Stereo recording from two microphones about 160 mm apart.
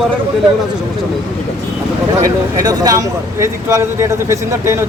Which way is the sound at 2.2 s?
20° right (ahead or behind).